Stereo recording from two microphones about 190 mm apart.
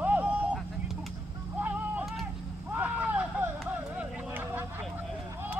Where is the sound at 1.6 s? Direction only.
10° right (ahead or behind).